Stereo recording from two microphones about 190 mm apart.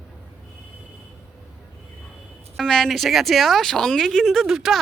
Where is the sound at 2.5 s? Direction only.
5° left (ahead or behind).